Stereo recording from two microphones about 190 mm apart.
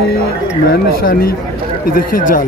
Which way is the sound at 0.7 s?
50° left (ahead or behind).